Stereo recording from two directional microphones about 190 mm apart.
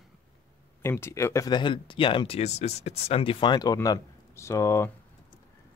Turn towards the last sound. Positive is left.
turn(degrees=15)  # may be behind; listen again after turning